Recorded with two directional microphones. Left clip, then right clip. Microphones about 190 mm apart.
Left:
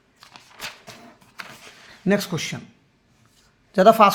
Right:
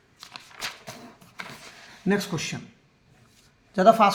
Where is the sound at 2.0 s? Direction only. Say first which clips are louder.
Left 4 dB; 50° left (ahead or behind).